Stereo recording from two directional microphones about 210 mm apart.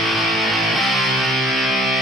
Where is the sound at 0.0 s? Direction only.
Centre (ahead or behind).